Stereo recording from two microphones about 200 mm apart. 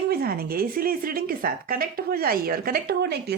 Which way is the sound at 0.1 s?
50° right (ahead or behind).